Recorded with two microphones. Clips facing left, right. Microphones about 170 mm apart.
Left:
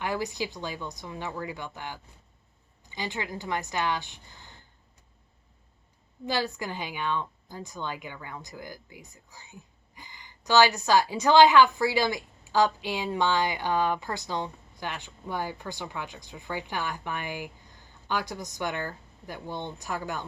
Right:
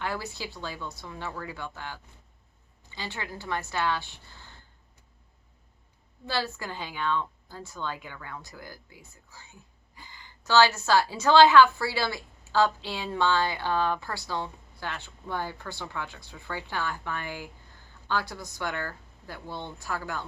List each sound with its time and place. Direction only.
0.0 s a woman's voice: 15° left (ahead or behind)
6.2 s a woman's voice: 15° left (ahead or behind)